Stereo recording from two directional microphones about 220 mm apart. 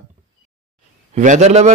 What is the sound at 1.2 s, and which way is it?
Speech, 30° right (ahead or behind).